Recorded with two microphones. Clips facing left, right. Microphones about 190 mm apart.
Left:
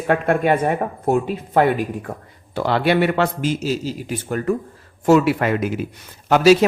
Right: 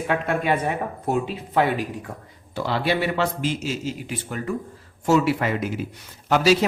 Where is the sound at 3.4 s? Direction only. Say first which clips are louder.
Left 4 dB; 40° left (ahead or behind).